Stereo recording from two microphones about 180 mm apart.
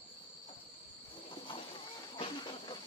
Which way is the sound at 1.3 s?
30° left (ahead or behind).